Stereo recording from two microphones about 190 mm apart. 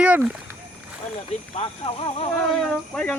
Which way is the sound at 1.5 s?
30° left (ahead or behind).